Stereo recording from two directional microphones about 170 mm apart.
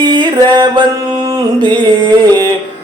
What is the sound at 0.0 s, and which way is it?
Music, 25° right (ahead or behind).